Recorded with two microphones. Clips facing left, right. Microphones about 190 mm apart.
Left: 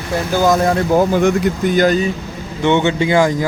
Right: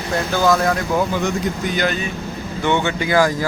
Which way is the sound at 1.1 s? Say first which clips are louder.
Left 7 dB; 50° left (ahead or behind).